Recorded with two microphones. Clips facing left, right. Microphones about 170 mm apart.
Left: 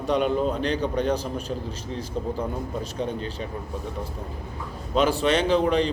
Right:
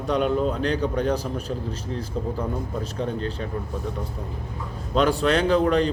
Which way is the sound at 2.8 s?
Centre (ahead or behind).